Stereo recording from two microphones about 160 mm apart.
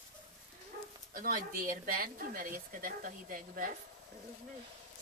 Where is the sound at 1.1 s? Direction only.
60° right (ahead or behind).